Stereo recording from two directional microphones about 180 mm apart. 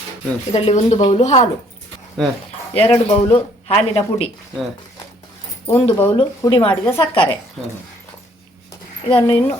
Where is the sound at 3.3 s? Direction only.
35° left (ahead or behind).